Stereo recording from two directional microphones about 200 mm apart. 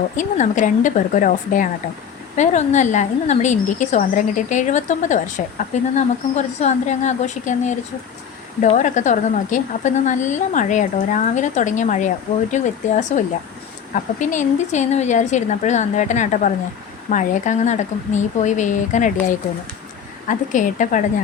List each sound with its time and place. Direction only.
0.2 s a woman's voice: 40° left (ahead or behind)
20.2 s a woman's voice: 40° left (ahead or behind)